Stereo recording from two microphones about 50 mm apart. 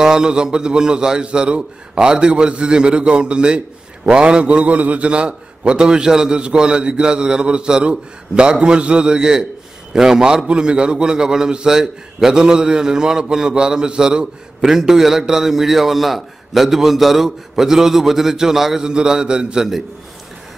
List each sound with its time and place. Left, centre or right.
0.0 s a man's voice: centre